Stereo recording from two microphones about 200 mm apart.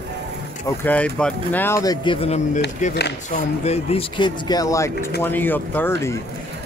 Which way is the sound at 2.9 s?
55° left (ahead or behind).